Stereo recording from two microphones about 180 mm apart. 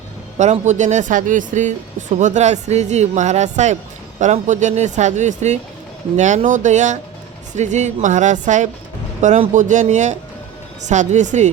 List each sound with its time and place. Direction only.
0.3 s speech: 40° right (ahead or behind)